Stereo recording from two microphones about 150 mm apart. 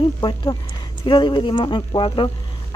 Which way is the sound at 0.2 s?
25° left (ahead or behind).